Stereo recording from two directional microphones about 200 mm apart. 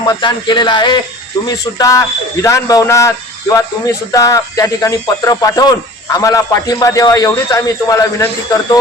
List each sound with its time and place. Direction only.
0.1 s a man's voice: 25° left (ahead or behind)